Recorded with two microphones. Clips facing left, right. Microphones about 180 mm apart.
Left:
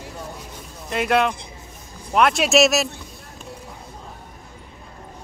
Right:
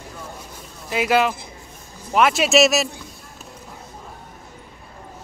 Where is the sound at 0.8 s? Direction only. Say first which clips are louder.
Right 1 dB; 5° right (ahead or behind).